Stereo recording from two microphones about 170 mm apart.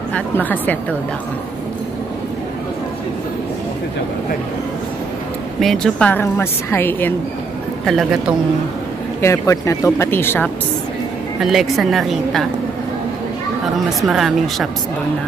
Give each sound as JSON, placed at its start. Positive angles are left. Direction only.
{"t": 0.1, "sound": "a woman's voice", "side_deg": 10}
{"t": 5.6, "sound": "a woman's voice", "side_deg": 0}
{"t": 7.8, "sound": "a woman's voice", "side_deg": 0}
{"t": 9.2, "sound": "a woman's voice", "side_deg": 15}
{"t": 11.4, "sound": "a woman's voice", "side_deg": 0}
{"t": 14.0, "sound": "a woman's voice", "side_deg": 0}